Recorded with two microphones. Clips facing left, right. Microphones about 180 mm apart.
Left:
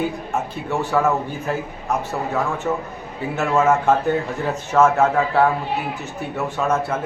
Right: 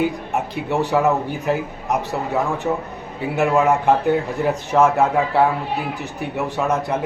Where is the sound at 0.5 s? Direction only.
15° right (ahead or behind).